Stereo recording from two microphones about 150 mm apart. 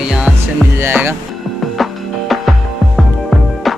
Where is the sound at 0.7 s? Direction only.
15° right (ahead or behind).